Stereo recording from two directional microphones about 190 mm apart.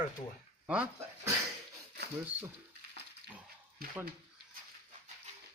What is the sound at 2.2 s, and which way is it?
Speech, 10° right (ahead or behind).